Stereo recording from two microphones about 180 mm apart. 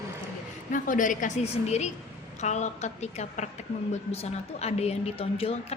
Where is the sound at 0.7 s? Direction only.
45° left (ahead or behind).